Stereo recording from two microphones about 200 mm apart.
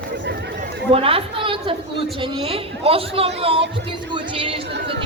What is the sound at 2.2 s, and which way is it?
A man's voice, 25° right (ahead or behind).